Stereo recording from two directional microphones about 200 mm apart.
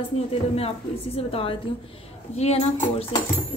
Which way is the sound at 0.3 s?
30° left (ahead or behind).